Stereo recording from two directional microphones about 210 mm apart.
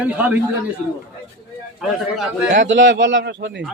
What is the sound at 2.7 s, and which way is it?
Speech, 60° right (ahead or behind).